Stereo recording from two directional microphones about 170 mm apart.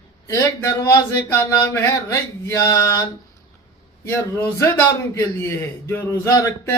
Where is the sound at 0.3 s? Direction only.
20° left (ahead or behind).